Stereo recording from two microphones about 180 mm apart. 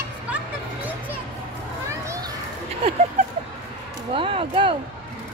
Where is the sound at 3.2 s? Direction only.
35° right (ahead or behind).